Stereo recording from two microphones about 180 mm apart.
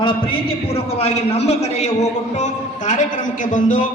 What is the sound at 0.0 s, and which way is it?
A man's voice, 30° left (ahead or behind).